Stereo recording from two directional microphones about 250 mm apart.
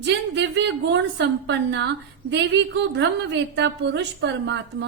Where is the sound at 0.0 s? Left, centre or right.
Right.